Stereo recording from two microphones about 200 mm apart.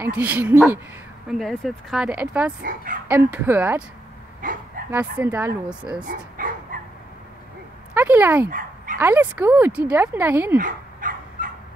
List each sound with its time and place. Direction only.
0.0 s speech: 5° right (ahead or behind)
1.3 s speech: centre (ahead or behind)
2.6 s speech: 45° right (ahead or behind)
3.1 s speech: 10° right (ahead or behind)
4.4 s dog: 45° right (ahead or behind)
4.9 s speech: 10° right (ahead or behind)
6.0 s dog: 45° right (ahead or behind)
7.9 s speech: 10° right (ahead or behind)
8.5 s dog: 45° right (ahead or behind)
8.9 s speech: 10° right (ahead or behind)
10.6 s dog: 40° right (ahead or behind)